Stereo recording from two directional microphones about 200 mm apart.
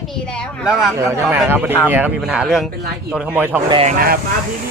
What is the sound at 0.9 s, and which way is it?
A man's voice, 10° right (ahead or behind).